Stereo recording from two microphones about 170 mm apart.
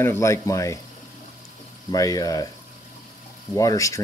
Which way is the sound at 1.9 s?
20° left (ahead or behind).